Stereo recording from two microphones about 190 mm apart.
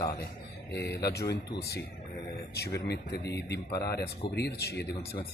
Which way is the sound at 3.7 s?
20° left (ahead or behind).